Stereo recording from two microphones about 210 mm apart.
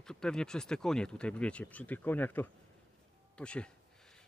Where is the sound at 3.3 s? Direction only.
5° left (ahead or behind).